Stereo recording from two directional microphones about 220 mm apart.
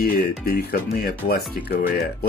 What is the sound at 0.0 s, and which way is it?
Speech, 45° left (ahead or behind).